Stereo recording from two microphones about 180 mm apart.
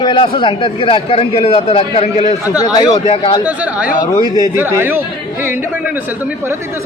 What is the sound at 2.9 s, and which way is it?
Speech, 35° left (ahead or behind).